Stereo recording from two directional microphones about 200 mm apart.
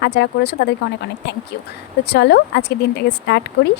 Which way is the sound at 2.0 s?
55° left (ahead or behind).